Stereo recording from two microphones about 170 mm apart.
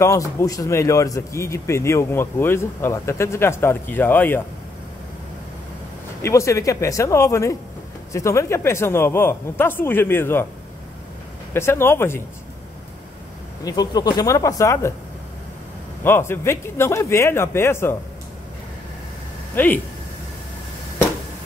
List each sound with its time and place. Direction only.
0.0 s a man's voice: 20° left (ahead or behind)
6.2 s a man's voice: 15° left (ahead or behind)
11.5 s a man's voice: 15° left (ahead or behind)
13.7 s speech: 25° left (ahead or behind)
16.0 s a man's voice: 15° left (ahead or behind)
19.5 s speech: 10° left (ahead or behind)